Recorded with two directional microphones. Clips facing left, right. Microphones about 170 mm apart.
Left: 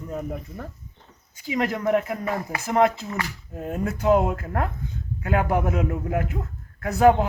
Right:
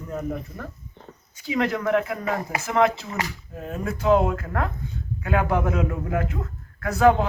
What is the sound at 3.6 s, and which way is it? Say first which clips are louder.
Speech: left 1 dB; 15° left (ahead or behind).